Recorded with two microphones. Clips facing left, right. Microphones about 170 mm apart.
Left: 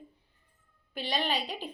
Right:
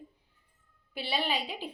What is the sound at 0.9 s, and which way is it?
Speech, 10° right (ahead or behind).